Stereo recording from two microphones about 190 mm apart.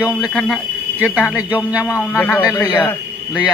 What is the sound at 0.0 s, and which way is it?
Speech, 10° right (ahead or behind).